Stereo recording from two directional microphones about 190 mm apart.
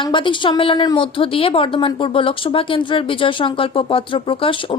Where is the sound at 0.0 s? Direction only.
25° left (ahead or behind).